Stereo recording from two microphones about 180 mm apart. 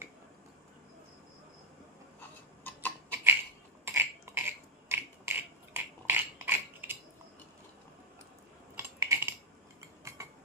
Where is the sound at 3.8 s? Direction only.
10° right (ahead or behind).